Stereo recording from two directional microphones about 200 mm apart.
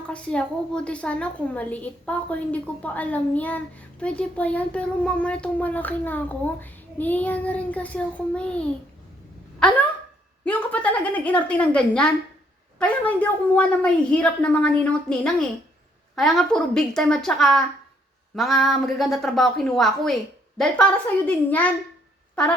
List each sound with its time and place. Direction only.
0.1 s a woman's voice: 5° left (ahead or behind)
10.4 s a woman's voice: 10° left (ahead or behind)
21.2 s a woman's voice: 10° left (ahead or behind)